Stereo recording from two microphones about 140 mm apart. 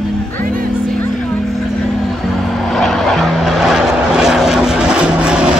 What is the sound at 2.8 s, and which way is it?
Vehicle, centre (ahead or behind).